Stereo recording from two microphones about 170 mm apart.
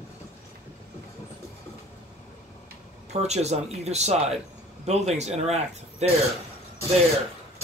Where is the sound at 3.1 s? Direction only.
40° right (ahead or behind).